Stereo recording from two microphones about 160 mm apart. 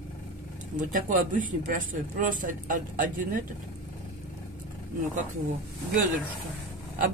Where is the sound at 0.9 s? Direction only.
55° right (ahead or behind).